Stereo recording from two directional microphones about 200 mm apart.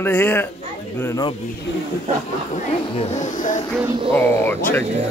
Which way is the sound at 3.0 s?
35° left (ahead or behind).